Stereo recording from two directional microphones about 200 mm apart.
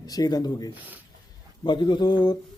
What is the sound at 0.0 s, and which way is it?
Speech, 20° left (ahead or behind).